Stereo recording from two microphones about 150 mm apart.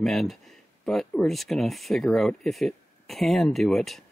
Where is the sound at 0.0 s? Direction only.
Centre (ahead or behind).